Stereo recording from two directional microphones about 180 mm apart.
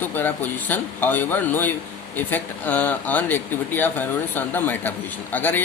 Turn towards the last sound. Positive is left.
turn(degrees=10)  # may be behind; listen again after turning